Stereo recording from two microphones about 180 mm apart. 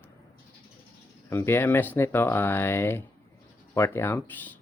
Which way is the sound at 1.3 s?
15° left (ahead or behind).